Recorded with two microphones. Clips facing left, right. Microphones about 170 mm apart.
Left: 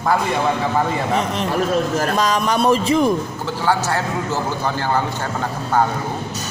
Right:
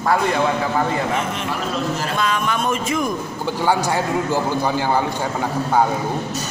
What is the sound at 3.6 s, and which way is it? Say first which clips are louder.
Speech: right 1 dB; 15° right (ahead or behind).